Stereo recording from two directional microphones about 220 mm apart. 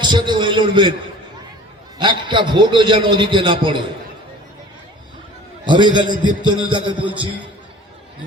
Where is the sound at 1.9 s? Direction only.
20° right (ahead or behind).